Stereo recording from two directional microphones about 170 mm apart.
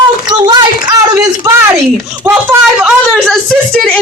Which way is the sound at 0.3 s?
25° right (ahead or behind).